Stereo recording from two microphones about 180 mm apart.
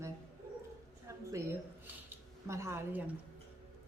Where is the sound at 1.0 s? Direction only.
15° right (ahead or behind).